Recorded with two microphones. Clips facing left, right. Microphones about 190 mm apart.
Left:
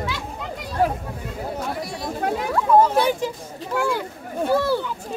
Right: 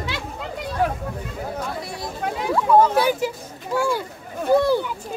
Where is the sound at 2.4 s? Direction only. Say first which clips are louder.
Right 1 dB; 5° right (ahead or behind).